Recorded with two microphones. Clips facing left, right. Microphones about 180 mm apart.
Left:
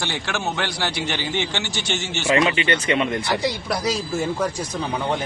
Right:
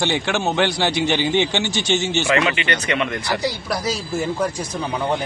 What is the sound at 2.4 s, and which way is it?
Speech, 25° left (ahead or behind).